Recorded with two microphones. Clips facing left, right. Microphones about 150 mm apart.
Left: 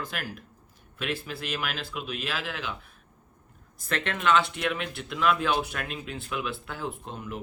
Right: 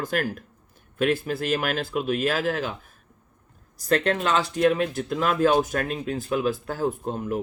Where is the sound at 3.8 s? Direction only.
40° right (ahead or behind).